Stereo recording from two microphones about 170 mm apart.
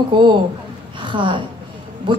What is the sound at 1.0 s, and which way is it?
A woman's voice, 30° right (ahead or behind).